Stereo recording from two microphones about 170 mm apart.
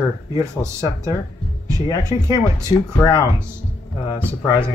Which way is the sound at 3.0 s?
25° left (ahead or behind).